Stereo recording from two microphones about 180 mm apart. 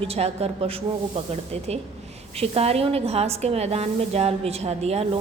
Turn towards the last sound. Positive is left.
turn(degrees=-35)  # may be behind; listen again after turning